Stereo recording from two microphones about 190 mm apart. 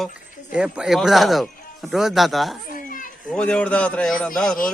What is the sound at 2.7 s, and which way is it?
Children playing, 45° left (ahead or behind).